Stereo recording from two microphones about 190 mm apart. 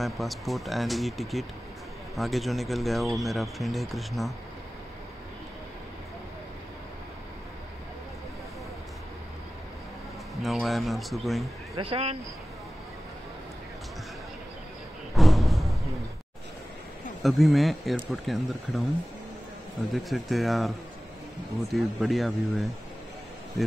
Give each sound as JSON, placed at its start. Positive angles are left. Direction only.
{"t": 0.0, "sound": "speech", "side_deg": 0}
{"t": 10.4, "sound": "speech", "side_deg": 0}
{"t": 11.8, "sound": "speech", "side_deg": -30}
{"t": 15.1, "sound": "a sound", "side_deg": 0}
{"t": 17.2, "sound": "speech", "side_deg": 0}
{"t": 20.0, "sound": "speech", "side_deg": 0}